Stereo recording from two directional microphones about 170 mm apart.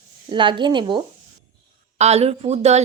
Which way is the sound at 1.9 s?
40° right (ahead or behind).